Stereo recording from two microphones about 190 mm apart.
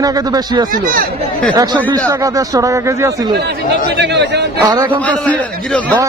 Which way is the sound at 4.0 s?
65° right (ahead or behind).